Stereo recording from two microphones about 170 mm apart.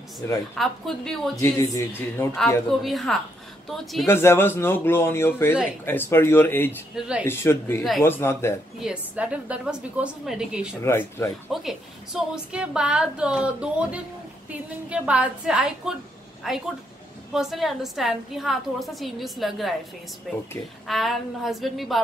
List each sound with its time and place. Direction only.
0.6 s a woman's voice: centre (ahead or behind)
1.4 s speech: 20° left (ahead or behind)
2.8 s a woman's voice: centre (ahead or behind)
4.1 s speech: 15° left (ahead or behind)
7.0 s a woman's voice: 5° right (ahead or behind)
7.2 s speech: 15° left (ahead or behind)
8.7 s a woman's voice: 5° right (ahead or behind)
10.8 s speech: 15° left (ahead or behind)
11.5 s a woman's voice: 5° right (ahead or behind)